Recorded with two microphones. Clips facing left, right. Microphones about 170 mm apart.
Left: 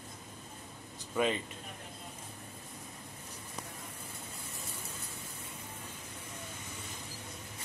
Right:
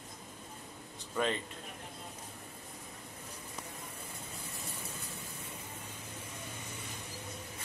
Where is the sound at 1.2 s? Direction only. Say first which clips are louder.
Left 2 dB; 10° left (ahead or behind).